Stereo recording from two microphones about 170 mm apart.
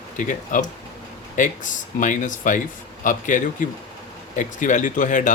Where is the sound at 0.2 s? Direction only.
50° left (ahead or behind).